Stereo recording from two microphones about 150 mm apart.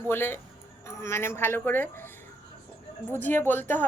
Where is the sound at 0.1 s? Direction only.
15° left (ahead or behind).